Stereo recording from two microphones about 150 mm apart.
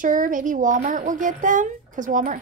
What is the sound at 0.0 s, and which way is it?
A child's voice, 65° right (ahead or behind).